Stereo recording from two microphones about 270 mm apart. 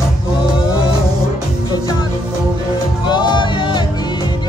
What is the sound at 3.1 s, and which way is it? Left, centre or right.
Music, centre.